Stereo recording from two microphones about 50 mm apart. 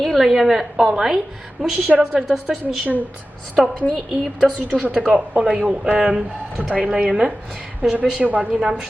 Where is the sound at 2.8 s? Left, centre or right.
Right.